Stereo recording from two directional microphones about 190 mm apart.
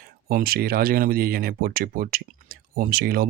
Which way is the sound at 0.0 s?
50° right (ahead or behind).